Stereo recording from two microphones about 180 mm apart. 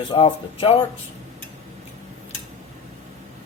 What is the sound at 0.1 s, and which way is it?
Speech, 30° left (ahead or behind).